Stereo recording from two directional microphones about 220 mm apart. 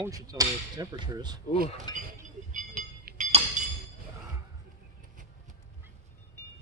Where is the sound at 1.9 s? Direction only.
20° left (ahead or behind).